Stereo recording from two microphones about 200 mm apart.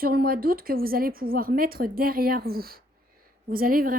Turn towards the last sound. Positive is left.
turn(degrees=-45)  # may be behind; listen again after turning